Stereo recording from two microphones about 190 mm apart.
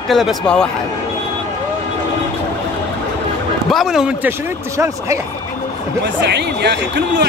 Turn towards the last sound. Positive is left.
turn(degrees=-60)  # may be behind; listen again after turning